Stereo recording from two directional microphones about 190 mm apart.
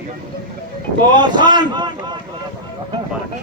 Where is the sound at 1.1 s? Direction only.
25° right (ahead or behind).